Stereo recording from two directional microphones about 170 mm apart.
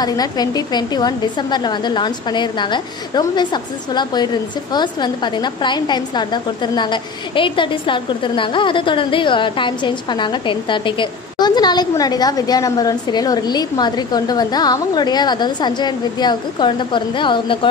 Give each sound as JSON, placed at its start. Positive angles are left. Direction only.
{"t": 0.0, "sound": "a woman's voice", "side_deg": 25}